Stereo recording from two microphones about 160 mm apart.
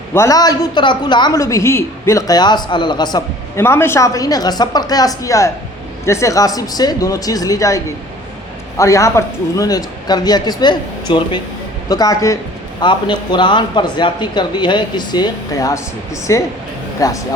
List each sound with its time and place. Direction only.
0.1 s a woman's voice: 20° left (ahead or behind)
8.8 s a woman's voice: 20° left (ahead or behind)